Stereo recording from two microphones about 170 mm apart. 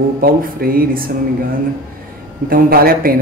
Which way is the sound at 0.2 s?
60° right (ahead or behind).